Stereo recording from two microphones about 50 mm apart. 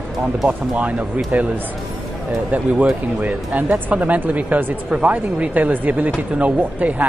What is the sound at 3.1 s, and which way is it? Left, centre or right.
Speech, right.